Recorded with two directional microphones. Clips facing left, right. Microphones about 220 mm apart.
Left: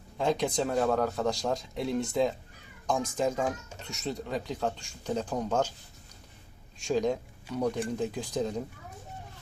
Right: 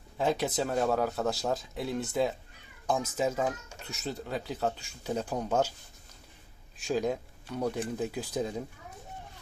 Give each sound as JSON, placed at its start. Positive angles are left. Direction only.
{"t": 0.2, "sound": "speech", "side_deg": -5}
{"t": 6.7, "sound": "speech", "side_deg": -5}